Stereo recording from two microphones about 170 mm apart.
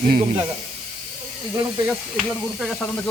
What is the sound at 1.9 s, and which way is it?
Snake, centre (ahead or behind).